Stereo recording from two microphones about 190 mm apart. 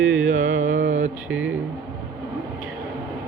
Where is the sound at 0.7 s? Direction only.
75° right (ahead or behind).